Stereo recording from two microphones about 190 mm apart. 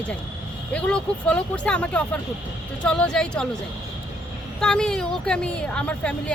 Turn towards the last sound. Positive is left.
turn(degrees=5)  # may be behind; listen again after turning